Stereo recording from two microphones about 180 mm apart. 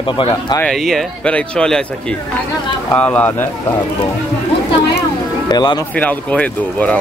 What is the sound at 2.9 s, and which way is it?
Speech, 10° left (ahead or behind).